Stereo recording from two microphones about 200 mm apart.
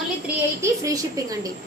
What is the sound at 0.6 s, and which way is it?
Speech, 15° right (ahead or behind).